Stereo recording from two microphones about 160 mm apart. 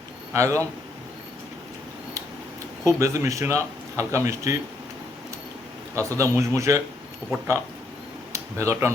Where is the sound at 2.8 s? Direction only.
20° right (ahead or behind).